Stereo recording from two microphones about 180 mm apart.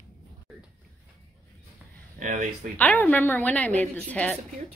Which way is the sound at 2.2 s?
45° right (ahead or behind).